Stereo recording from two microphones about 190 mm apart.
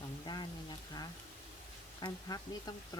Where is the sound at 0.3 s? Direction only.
25° left (ahead or behind).